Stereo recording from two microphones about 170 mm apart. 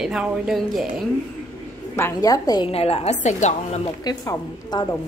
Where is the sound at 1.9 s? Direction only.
15° left (ahead or behind).